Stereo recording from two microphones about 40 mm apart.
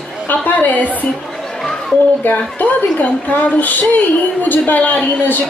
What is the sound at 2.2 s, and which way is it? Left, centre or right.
A woman's voice, left.